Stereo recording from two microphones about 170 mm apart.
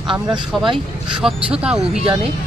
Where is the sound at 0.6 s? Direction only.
5° right (ahead or behind).